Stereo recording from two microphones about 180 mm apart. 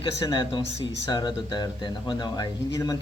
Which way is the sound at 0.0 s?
25° left (ahead or behind).